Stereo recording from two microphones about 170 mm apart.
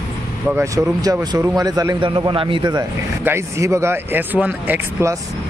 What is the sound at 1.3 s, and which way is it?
A man's voice, 20° right (ahead or behind).